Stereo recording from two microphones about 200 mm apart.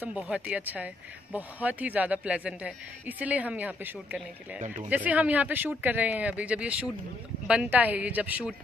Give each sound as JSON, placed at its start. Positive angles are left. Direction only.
{"t": 0.0, "sound": "speech", "side_deg": -5}
{"t": 4.6, "sound": "speech", "side_deg": -40}
{"t": 4.8, "sound": "speech", "side_deg": -10}